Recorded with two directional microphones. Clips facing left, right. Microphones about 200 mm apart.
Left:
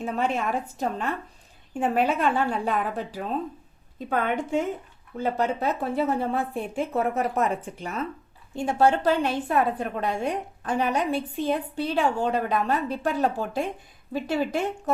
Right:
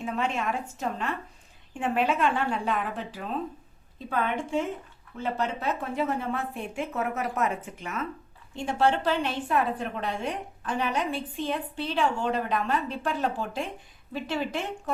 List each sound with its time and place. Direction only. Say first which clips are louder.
0.0 s a woman's voice: left 3 dB; 40° left (ahead or behind)